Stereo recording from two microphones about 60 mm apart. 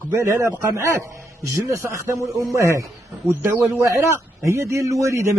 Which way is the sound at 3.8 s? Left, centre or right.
Right.